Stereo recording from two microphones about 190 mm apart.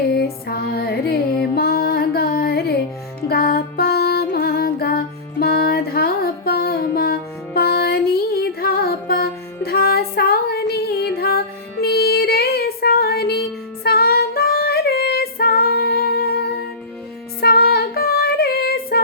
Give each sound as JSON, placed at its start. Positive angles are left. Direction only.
{"t": 0.1, "sound": "music", "side_deg": 55}
{"t": 13.8, "sound": "female singing", "side_deg": 55}